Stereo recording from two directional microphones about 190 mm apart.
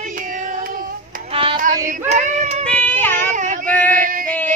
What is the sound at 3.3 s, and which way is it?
Child singing, 40° right (ahead or behind).